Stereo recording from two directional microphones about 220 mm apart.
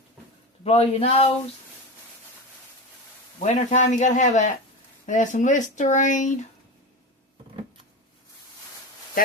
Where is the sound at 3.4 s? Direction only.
30° left (ahead or behind).